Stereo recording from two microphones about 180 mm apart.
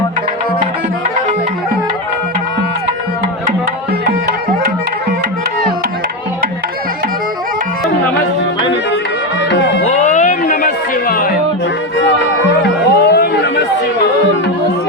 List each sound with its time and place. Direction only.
9.5 s music: 75° left (ahead or behind)
9.8 s a sound: 40° left (ahead or behind)
11.1 s music: 55° left (ahead or behind)
12.9 s chatter: 65° left (ahead or behind)